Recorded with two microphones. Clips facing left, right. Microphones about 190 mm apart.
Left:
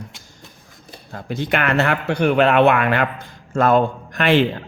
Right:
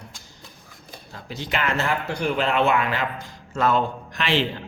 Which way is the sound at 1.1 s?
55° left (ahead or behind).